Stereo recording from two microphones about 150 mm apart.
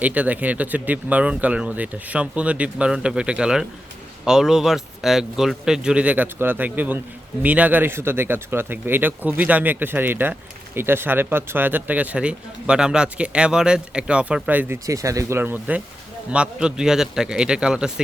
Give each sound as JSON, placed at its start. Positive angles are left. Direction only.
{"t": 0.0, "sound": "a man's voice", "side_deg": -10}
{"t": 14.8, "sound": "a man's voice", "side_deg": -20}